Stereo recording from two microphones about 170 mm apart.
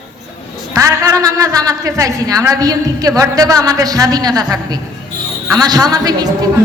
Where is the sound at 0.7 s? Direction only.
20° right (ahead or behind).